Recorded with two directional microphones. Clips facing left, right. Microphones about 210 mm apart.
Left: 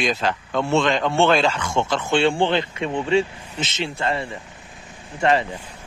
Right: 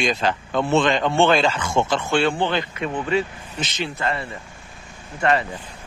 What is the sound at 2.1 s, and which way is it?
Speech, 25° left (ahead or behind).